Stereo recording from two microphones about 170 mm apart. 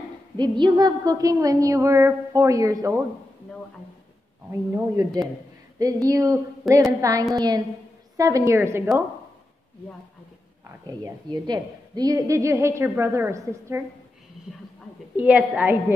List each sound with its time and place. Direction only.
0.4 s a woman's voice: 25° right (ahead or behind)
4.5 s a woman's voice: 20° right (ahead or behind)
10.9 s a woman's voice: 25° right (ahead or behind)
15.1 s a woman's voice: 10° right (ahead or behind)